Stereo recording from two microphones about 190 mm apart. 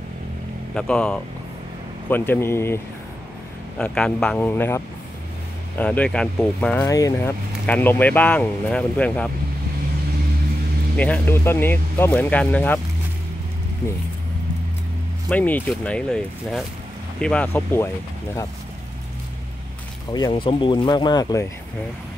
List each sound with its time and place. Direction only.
0.7 s speech: 5° left (ahead or behind)
6.9 s speech: 15° left (ahead or behind)
11.0 s speech: 10° left (ahead or behind)
15.2 s speech: 10° left (ahead or behind)
20.1 s speech: 20° left (ahead or behind)